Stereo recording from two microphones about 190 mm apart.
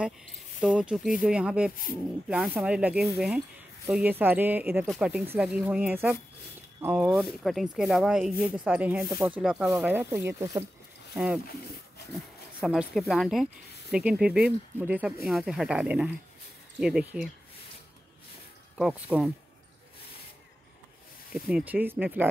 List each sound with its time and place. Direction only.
0.6 s speech: 5° right (ahead or behind)
12.1 s speech: 5° right (ahead or behind)
18.8 s speech: 5° right (ahead or behind)
21.3 s speech: centre (ahead or behind)